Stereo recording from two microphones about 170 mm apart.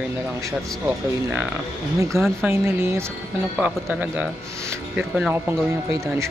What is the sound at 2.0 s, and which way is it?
Speech, 15° right (ahead or behind).